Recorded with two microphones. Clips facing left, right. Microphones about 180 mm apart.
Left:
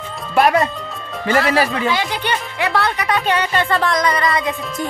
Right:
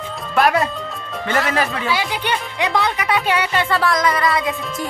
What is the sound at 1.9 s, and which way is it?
Speech, 10° right (ahead or behind).